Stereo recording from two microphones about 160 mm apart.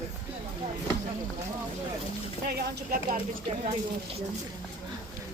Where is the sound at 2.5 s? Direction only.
75° right (ahead or behind).